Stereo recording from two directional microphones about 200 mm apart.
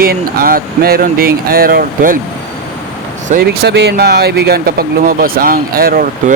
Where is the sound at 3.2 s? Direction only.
50° right (ahead or behind).